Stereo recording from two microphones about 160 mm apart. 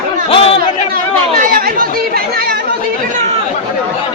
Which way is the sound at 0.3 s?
35° left (ahead or behind).